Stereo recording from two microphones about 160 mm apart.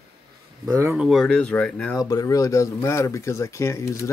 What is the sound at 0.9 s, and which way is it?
Speech, centre (ahead or behind).